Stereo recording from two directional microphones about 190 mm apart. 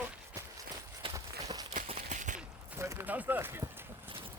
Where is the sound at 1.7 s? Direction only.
40° right (ahead or behind).